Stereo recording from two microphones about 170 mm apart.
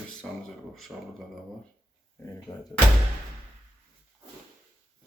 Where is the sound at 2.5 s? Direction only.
25° left (ahead or behind).